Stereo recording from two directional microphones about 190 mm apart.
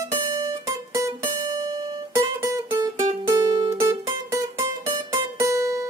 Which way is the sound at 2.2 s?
20° right (ahead or behind).